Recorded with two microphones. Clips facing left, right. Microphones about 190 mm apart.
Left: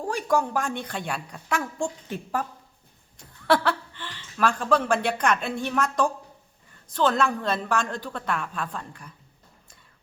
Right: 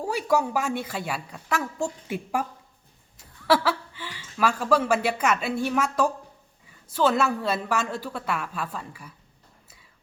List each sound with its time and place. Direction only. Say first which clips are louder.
0.0 s a woman's voice: right 1 dB; 5° right (ahead or behind)